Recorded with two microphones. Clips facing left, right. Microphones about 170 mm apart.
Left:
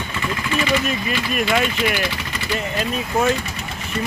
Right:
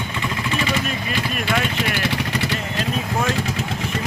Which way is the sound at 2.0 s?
65° right (ahead or behind).